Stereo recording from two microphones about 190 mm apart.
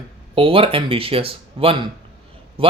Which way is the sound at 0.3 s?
30° right (ahead or behind).